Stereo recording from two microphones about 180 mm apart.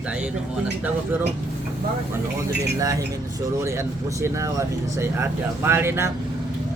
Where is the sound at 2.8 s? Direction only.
20° right (ahead or behind).